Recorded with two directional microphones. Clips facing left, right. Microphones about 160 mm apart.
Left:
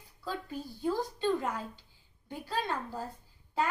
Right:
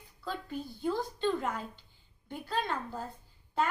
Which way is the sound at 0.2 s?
10° left (ahead or behind).